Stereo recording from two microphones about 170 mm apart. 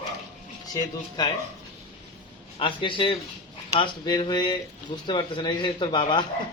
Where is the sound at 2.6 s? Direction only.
30° left (ahead or behind).